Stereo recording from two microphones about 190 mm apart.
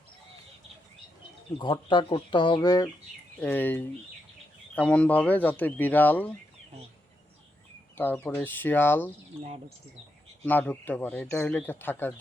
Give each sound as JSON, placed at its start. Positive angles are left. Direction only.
{"t": 1.5, "sound": "speech", "side_deg": 25}
{"t": 3.4, "sound": "speech", "side_deg": 10}
{"t": 7.9, "sound": "speech", "side_deg": 10}
{"t": 9.4, "sound": "speech", "side_deg": -30}
{"t": 10.4, "sound": "speech", "side_deg": 10}